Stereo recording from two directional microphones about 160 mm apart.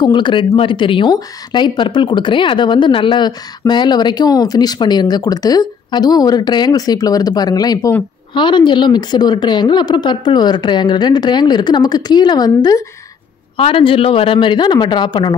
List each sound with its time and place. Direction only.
0.0 s speech: 30° left (ahead or behind)
13.6 s speech: 35° left (ahead or behind)